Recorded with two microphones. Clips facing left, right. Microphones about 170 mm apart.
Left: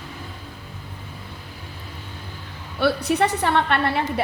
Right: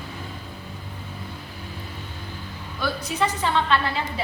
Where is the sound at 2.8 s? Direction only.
65° left (ahead or behind).